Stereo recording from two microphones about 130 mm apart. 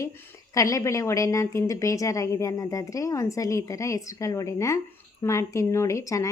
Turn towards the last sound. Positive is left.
turn(degrees=25)  # may be behind; listen again after turning